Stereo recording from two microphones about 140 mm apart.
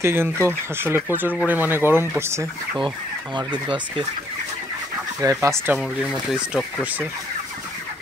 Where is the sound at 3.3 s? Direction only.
35° right (ahead or behind).